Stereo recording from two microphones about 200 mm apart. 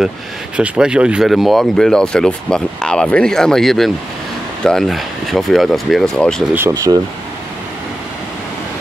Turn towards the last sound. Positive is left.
turn(degrees=-15)  # may be behind; listen again after turning